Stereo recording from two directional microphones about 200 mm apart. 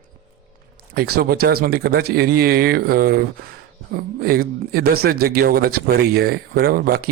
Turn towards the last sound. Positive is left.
turn(degrees=-50)  # may be behind; listen again after turning